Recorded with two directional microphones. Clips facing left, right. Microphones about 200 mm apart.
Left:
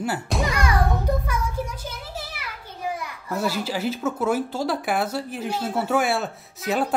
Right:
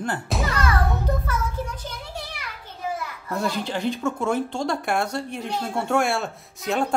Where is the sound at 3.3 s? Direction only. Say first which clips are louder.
Left 1 dB; 5° left (ahead or behind).